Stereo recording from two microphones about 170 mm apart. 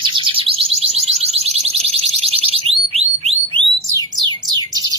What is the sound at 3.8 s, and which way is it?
Bird, 20° right (ahead or behind).